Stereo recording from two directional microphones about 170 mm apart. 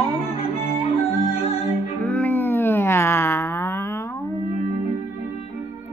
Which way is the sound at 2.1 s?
10° left (ahead or behind).